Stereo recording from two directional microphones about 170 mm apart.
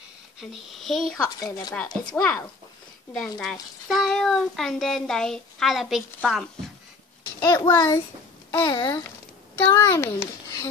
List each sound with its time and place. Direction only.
0.4 s a child's voice: centre (ahead or behind)
1.1 s speech: 20° left (ahead or behind)
3.1 s a child's voice: 5° left (ahead or behind)
7.3 s a child's voice: 20° left (ahead or behind)